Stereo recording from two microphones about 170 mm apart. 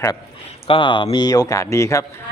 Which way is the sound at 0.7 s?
30° left (ahead or behind).